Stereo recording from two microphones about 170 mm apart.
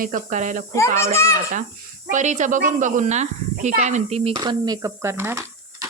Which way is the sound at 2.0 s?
45° right (ahead or behind).